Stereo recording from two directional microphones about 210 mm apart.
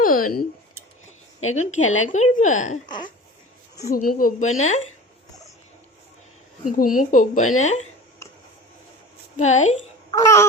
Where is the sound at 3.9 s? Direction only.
40° left (ahead or behind).